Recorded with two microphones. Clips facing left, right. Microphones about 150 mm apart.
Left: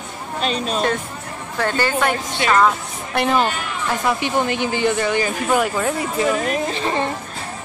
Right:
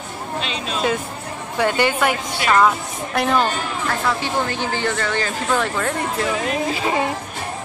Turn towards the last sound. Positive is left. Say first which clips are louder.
# right 1 dB
turn(degrees=-10)  # may be behind; listen again after turning